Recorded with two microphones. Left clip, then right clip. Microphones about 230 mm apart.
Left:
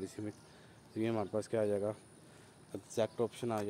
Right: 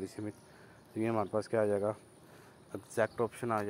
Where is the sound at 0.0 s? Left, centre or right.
Centre.